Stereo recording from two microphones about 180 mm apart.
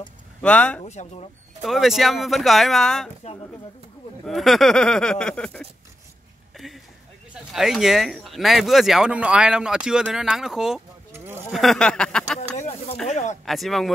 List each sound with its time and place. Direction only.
0.4 s speech: 5° left (ahead or behind)
0.8 s speech: 40° left (ahead or behind)
1.6 s speech: centre (ahead or behind)
4.3 s speech: centre (ahead or behind)
6.5 s a sound: centre (ahead or behind)
7.3 s speech: centre (ahead or behind)
11.5 s a sound: centre (ahead or behind)
12.5 s a sound: 40° left (ahead or behind)
13.1 s speech: 40° left (ahead or behind)
13.5 s speech: centre (ahead or behind)